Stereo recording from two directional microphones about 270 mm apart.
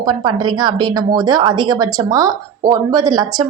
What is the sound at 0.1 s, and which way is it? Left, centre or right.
A woman's voice, centre.